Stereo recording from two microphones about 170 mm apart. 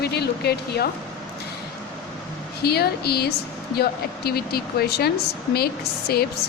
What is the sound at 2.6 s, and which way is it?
Speech, 70° left (ahead or behind).